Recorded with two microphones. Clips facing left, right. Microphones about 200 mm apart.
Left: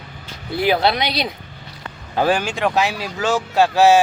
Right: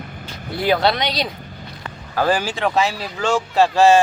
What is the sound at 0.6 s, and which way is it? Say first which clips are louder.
Speech: even; 10° left (ahead or behind).